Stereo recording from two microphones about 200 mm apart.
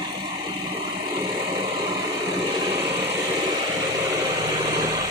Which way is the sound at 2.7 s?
20° right (ahead or behind).